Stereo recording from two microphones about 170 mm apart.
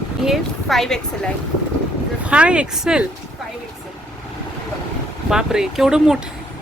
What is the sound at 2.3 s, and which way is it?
Speech, 5° right (ahead or behind).